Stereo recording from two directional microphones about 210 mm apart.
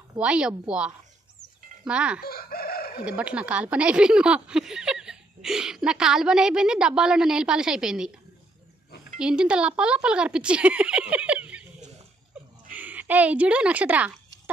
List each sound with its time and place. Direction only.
0.2 s speech: 5° right (ahead or behind)
2.2 s chicken: 45° left (ahead or behind)
3.1 s speech: 5° right (ahead or behind)
9.2 s speech: 5° right (ahead or behind)
12.7 s speech: 10° right (ahead or behind)